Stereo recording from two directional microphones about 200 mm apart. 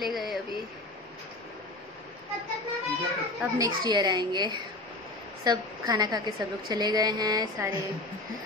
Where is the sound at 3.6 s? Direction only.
20° right (ahead or behind).